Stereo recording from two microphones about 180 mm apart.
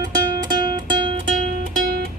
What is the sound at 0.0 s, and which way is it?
Music, 25° right (ahead or behind).